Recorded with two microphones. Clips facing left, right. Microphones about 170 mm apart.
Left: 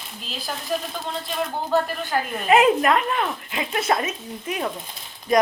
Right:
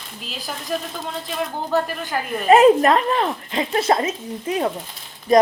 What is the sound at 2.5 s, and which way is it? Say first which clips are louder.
Speech: right 5 dB; 35° right (ahead or behind).